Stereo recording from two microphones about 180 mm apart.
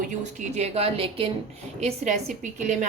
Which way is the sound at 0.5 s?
35° right (ahead or behind).